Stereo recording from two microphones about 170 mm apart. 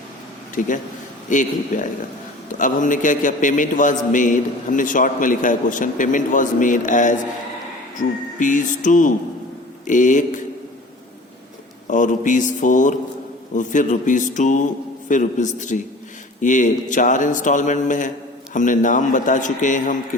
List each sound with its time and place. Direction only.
0.6 s a man's voice: 50° left (ahead or behind)
11.9 s a man's voice: 50° left (ahead or behind)